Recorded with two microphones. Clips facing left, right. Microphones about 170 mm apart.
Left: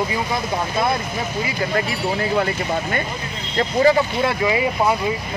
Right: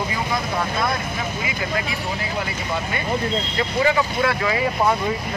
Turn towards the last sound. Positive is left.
turn(degrees=20)  # may be behind; listen again after turning